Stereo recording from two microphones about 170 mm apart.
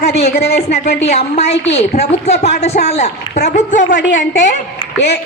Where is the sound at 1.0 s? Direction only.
40° left (ahead or behind).